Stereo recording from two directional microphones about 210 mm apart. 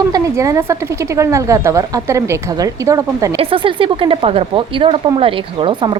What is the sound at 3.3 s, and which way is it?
Speech, 25° right (ahead or behind).